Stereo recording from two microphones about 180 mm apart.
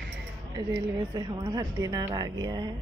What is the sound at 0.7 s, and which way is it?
Speech, 20° right (ahead or behind).